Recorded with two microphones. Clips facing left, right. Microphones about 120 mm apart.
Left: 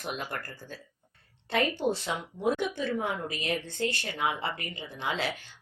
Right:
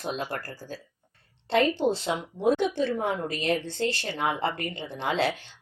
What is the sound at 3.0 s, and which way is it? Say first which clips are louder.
Speech: right 4 dB; 35° right (ahead or behind).